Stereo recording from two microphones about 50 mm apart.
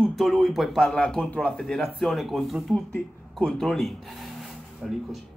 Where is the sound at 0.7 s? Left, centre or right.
Centre.